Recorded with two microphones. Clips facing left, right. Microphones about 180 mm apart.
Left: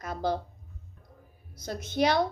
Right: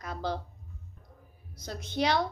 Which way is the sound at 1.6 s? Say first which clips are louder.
Left 3 dB; 50° left (ahead or behind).